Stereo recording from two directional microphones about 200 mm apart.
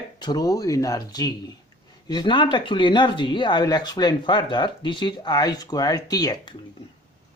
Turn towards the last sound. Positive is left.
turn(degrees=20)  # may be behind; listen again after turning